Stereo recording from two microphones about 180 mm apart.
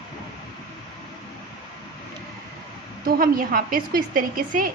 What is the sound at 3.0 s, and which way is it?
A woman's voice, 55° right (ahead or behind).